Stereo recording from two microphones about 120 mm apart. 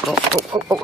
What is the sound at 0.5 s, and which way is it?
Speech, 40° right (ahead or behind).